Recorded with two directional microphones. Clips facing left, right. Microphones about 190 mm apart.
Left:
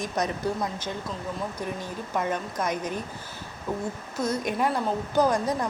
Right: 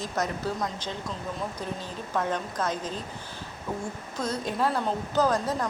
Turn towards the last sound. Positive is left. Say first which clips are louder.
# left 2 dB
turn(degrees=15)  # may be behind; listen again after turning